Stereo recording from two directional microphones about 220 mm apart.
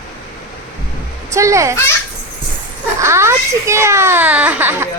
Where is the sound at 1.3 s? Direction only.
15° right (ahead or behind).